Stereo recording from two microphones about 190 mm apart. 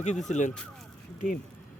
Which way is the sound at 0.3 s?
40° left (ahead or behind).